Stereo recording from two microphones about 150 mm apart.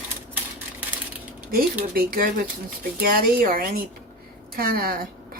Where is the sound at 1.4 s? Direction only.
85° right.